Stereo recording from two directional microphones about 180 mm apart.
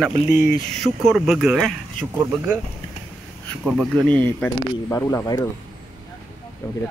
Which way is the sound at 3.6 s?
Centre (ahead or behind).